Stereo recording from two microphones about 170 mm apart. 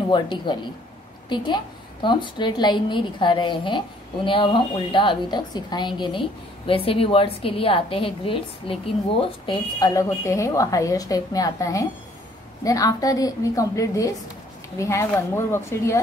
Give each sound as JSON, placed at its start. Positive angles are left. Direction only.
{"t": 0.1, "sound": "a woman's voice", "side_deg": 25}